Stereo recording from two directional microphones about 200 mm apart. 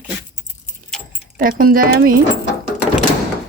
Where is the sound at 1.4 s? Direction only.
45° right (ahead or behind).